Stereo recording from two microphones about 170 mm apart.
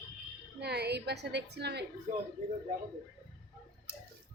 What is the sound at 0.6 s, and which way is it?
A woman's voice, 75° right (ahead or behind).